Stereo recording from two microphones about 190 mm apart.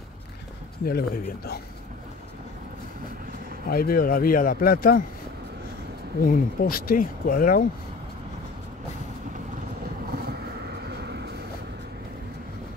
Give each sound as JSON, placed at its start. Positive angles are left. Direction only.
{"t": 0.8, "sound": "speech", "side_deg": 50}
{"t": 3.7, "sound": "speech", "side_deg": 50}
{"t": 6.2, "sound": "speech", "side_deg": 50}
{"t": 10.1, "sound": "vehicle", "side_deg": -60}